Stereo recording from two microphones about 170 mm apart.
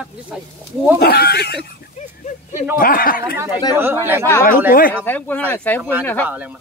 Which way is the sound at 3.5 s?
25° left (ahead or behind).